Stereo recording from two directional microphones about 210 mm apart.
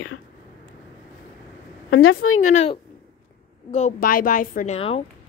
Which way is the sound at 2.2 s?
75° left (ahead or behind).